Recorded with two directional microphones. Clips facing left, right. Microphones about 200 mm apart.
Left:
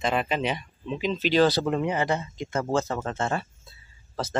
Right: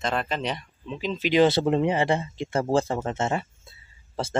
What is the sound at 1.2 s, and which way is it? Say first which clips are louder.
Speech: right 2 dB; 20° right (ahead or behind).